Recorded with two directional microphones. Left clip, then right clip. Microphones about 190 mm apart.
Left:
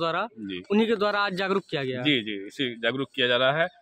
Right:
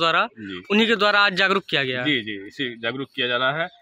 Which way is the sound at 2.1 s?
25° left (ahead or behind).